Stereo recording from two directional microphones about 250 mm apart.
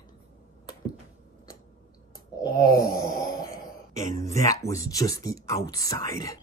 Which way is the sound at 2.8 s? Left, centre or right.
Left.